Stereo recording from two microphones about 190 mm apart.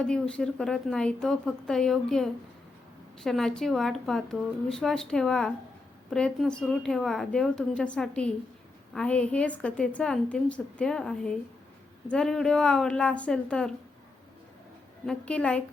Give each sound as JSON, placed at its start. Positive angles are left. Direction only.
{"t": 0.0, "sound": "a woman's voice", "side_deg": 5}
{"t": 15.0, "sound": "a woman's voice", "side_deg": 5}